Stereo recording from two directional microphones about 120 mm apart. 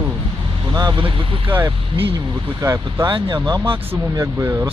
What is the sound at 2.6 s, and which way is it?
Speech, 25° right (ahead or behind).